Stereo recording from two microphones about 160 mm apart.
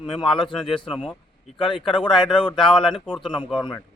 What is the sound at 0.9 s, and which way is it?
Speech, 5° right (ahead or behind).